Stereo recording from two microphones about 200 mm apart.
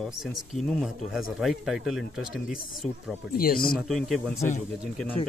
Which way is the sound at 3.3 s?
45° left (ahead or behind).